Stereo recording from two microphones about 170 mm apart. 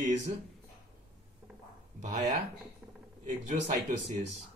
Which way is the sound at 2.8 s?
5° right (ahead or behind).